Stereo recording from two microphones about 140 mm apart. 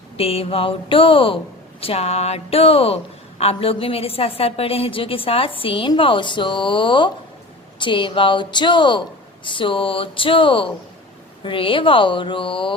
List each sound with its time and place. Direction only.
0.2 s a woman's voice: 45° left (ahead or behind)